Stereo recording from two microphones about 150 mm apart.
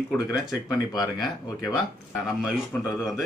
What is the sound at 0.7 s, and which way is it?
Speech, 25° left (ahead or behind).